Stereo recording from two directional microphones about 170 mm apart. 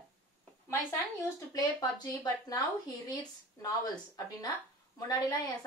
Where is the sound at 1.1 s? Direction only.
20° left (ahead or behind).